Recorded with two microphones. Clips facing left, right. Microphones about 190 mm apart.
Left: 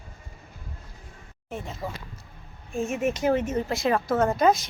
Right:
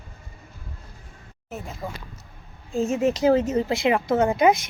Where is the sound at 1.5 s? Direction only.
5° right (ahead or behind).